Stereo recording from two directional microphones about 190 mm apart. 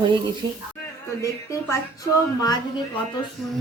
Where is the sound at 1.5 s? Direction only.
15° left (ahead or behind).